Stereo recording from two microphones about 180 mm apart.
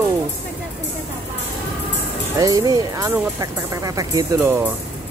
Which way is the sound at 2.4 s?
20° right (ahead or behind).